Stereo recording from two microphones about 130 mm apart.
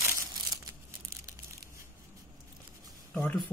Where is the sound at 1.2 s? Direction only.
25° right (ahead or behind).